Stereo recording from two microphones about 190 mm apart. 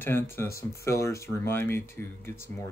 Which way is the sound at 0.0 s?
10° left (ahead or behind).